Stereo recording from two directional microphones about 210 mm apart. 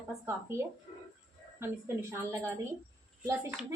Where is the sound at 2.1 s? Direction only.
10° right (ahead or behind).